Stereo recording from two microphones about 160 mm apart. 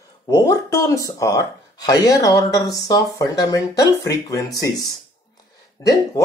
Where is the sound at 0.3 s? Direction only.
20° left (ahead or behind).